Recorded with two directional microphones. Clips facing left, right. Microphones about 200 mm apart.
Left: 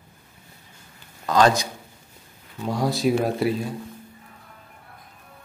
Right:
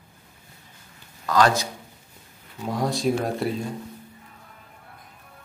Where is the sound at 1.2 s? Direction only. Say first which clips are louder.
Left 2 dB; 20° left (ahead or behind).